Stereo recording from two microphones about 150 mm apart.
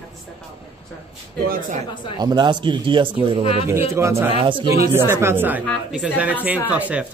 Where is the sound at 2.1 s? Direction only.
30° right (ahead or behind).